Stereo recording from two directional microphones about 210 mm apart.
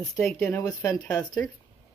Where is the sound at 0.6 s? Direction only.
15° left (ahead or behind).